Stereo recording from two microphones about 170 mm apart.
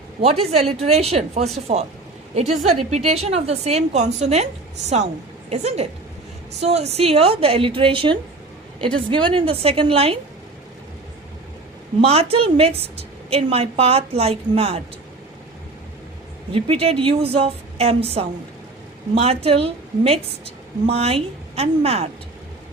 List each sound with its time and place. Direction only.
0.2 s a woman's voice: 35° right (ahead or behind)
5.5 s a woman's voice: 40° right (ahead or behind)
11.9 s a woman's voice: 35° right (ahead or behind)
16.5 s a woman's voice: 35° right (ahead or behind)